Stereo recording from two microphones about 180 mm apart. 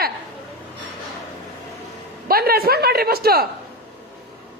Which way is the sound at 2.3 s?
55° right (ahead or behind).